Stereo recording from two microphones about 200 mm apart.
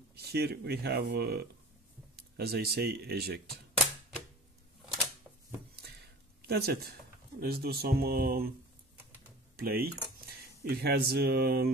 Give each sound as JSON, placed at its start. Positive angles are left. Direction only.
{"t": 0.1, "sound": "speech", "side_deg": -55}
{"t": 6.4, "sound": "speech", "side_deg": -50}
{"t": 9.6, "sound": "speech", "side_deg": -50}